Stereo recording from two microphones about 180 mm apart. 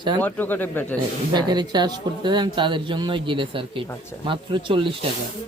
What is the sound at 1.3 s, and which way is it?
Speech, 25° right (ahead or behind).